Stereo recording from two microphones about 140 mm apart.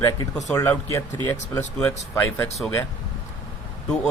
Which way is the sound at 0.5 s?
20° left (ahead or behind).